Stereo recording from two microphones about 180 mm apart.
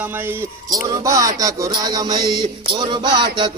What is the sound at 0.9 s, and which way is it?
Music, 20° right (ahead or behind).